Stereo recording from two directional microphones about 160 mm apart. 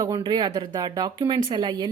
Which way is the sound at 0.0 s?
25° right (ahead or behind).